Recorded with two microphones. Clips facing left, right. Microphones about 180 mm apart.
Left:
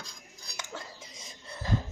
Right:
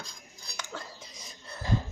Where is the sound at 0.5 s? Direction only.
25° left (ahead or behind).